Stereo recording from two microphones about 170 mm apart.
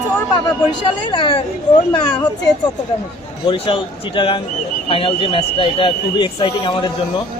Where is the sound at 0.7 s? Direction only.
30° left (ahead or behind).